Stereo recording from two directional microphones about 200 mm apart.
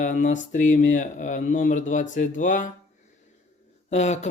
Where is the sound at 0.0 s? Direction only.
40° left (ahead or behind).